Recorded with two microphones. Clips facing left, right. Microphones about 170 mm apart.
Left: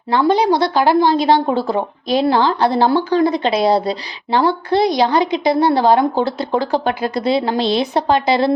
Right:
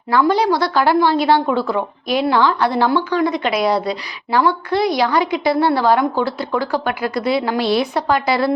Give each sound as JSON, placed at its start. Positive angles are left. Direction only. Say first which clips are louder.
{"t": 0.1, "sound": "a woman's voice", "louder": "left 1 dB", "side_deg": 25}
{"t": 1.5, "sound": "a woman's voice", "louder": "left 1 dB", "side_deg": 30}